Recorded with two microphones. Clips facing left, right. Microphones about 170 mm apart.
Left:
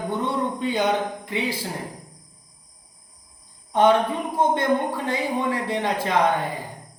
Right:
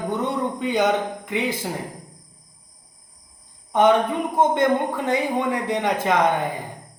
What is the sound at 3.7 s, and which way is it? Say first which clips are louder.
A woman's voice: right 1 dB; 20° right (ahead or behind).